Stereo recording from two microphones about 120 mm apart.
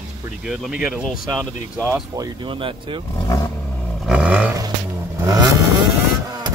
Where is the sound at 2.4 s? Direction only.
45° right (ahead or behind).